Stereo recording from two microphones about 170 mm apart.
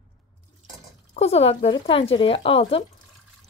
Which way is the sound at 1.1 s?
35° left (ahead or behind).